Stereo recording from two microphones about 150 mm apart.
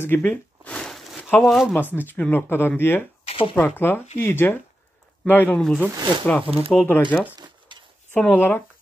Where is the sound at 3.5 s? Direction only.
15° left (ahead or behind).